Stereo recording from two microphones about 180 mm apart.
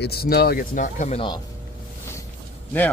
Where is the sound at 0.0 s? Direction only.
60° left (ahead or behind); by 1.2 s 40° left (ahead or behind).